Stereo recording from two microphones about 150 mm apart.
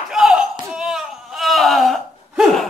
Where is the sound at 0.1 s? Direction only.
5° right (ahead or behind).